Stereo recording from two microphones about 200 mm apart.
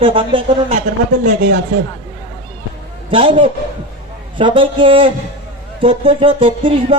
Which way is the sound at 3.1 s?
25° right (ahead or behind).